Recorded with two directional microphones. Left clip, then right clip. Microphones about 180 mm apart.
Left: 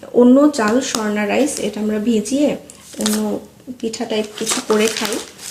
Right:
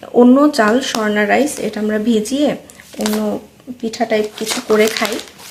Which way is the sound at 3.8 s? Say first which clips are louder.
Right 4 dB; 40° right (ahead or behind).